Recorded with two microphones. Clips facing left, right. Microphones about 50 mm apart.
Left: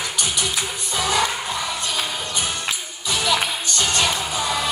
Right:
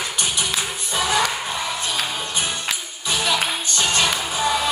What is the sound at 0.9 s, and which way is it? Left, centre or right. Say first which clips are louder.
Music: right 1 dB; right.